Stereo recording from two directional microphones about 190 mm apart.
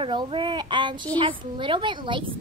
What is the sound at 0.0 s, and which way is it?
A woman's voice, 25° right (ahead or behind).